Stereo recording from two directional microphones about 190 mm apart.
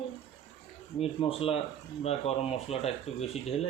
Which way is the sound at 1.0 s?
30° left (ahead or behind).